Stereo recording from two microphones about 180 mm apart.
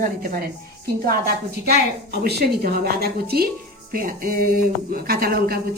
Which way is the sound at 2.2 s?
60° right (ahead or behind).